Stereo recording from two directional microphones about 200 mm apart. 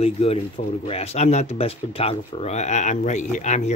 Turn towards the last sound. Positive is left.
turn(degrees=35)  # may be behind; listen again after turning